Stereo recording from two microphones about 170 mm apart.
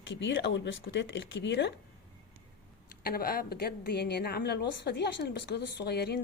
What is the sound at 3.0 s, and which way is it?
A woman's voice, 60° left (ahead or behind).